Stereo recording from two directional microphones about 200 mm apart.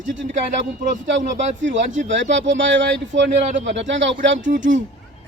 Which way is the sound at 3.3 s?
35° right (ahead or behind).